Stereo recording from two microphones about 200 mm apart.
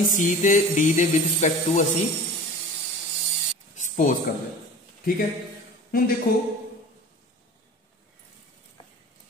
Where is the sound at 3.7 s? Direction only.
40° left (ahead or behind).